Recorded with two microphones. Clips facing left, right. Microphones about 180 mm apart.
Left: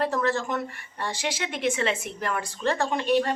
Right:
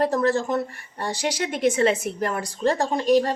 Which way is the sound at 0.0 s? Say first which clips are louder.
Right 4 dB; 40° right (ahead or behind).